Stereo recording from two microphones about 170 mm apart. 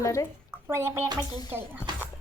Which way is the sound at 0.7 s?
15° right (ahead or behind).